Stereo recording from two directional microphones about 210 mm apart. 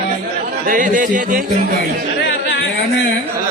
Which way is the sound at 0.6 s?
40° right (ahead or behind).